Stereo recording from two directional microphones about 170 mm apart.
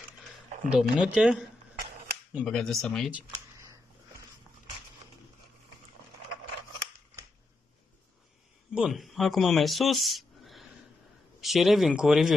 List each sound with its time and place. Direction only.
0.7 s speech: 5° right (ahead or behind)
8.7 s speech: 5° right (ahead or behind)